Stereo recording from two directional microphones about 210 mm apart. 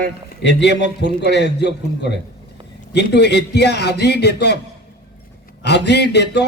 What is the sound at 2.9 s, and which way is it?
Speech, 55° left (ahead or behind).